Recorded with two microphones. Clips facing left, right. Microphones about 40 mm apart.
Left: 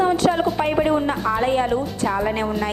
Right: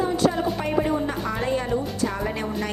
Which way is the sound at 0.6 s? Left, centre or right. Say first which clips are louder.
Left 4 dB; left.